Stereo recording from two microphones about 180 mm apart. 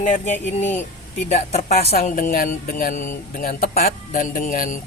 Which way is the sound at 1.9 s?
50° left (ahead or behind).